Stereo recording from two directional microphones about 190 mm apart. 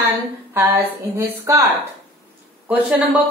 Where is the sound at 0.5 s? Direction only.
10° right (ahead or behind).